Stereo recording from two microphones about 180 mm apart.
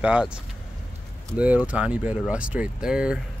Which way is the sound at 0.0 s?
5° right (ahead or behind).